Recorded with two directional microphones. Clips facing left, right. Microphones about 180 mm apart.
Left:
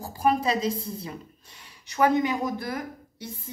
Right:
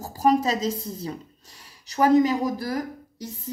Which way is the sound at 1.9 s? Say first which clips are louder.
Right 4 dB; 35° right (ahead or behind).